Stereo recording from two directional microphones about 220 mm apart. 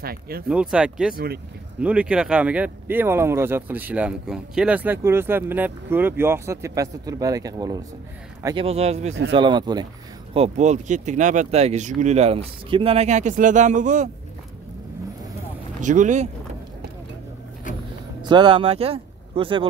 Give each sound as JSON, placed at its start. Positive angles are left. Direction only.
{"t": 0.0, "sound": "speech", "side_deg": -45}
{"t": 0.5, "sound": "speech", "side_deg": -5}
{"t": 1.1, "sound": "speech", "side_deg": -45}
{"t": 1.8, "sound": "speech", "side_deg": -5}
{"t": 8.6, "sound": "speech", "side_deg": -30}
{"t": 10.3, "sound": "speech", "side_deg": -30}
{"t": 15.8, "sound": "speech", "side_deg": -35}
{"t": 18.2, "sound": "speech", "side_deg": -20}